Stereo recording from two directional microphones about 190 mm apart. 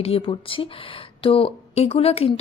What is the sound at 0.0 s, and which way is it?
A woman's voice, 30° left (ahead or behind).